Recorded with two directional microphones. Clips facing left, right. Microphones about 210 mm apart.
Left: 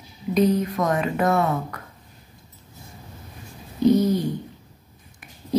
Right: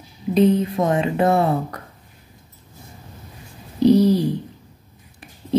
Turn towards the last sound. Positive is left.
turn(degrees=-35)  # may be behind; listen again after turning